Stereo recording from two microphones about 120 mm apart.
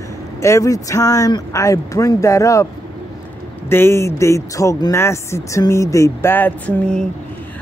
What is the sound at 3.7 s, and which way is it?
Speech, 20° left (ahead or behind).